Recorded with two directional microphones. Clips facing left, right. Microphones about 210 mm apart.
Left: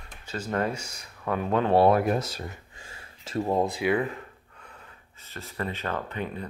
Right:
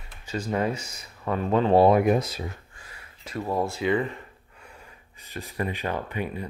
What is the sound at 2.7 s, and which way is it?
Speech, 25° left (ahead or behind).